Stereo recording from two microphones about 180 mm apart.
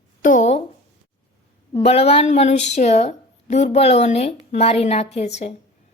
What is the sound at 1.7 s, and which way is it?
Speech, 30° left (ahead or behind).